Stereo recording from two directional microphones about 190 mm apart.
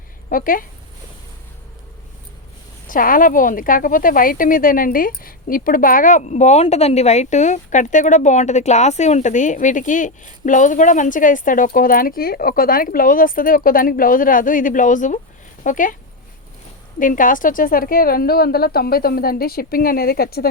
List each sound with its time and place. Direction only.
0.3 s speech: 45° left (ahead or behind)
2.8 s speech: 45° left (ahead or behind)
17.0 s speech: 45° left (ahead or behind)